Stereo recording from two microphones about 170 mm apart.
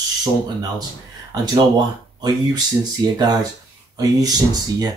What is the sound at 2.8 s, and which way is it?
Speech, 25° right (ahead or behind).